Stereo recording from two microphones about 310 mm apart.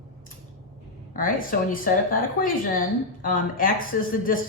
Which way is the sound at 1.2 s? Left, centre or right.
Left.